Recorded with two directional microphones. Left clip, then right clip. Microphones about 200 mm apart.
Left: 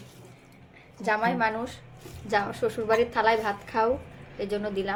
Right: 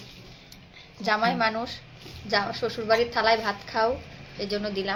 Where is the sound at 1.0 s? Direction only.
5° left (ahead or behind).